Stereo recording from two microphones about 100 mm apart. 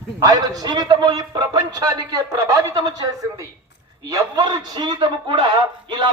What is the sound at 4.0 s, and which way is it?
A man's voice, 35° right (ahead or behind).